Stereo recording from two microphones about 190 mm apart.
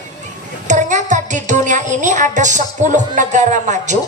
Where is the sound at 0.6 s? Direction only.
40° right (ahead or behind).